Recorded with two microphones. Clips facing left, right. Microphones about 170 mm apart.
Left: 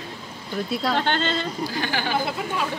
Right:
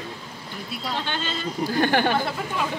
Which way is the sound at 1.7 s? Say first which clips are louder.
Right 9 dB; 55° right (ahead or behind).